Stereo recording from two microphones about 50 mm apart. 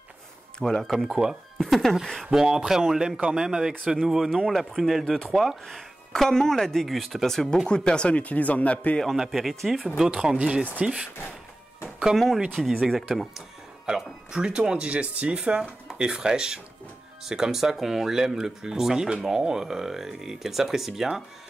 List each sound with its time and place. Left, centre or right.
0.6 s speech: centre
0.9 s speech: centre
1.6 s speech: centre
2.3 s speech: centre
7.7 s speech: centre
9.0 s speech: centre
10.0 s speech: centre
12.6 s speech: centre
13.8 s speech: centre